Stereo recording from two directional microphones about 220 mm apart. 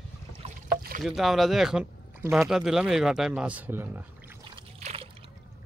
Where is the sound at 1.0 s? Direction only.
Centre (ahead or behind).